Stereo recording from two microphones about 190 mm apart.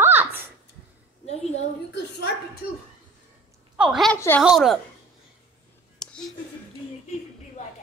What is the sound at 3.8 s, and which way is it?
Speech, centre (ahead or behind).